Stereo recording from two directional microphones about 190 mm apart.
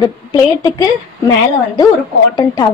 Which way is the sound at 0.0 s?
20° left (ahead or behind).